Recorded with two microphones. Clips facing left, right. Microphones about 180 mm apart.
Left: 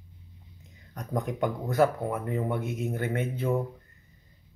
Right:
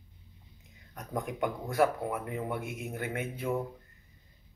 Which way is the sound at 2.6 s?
25° left (ahead or behind).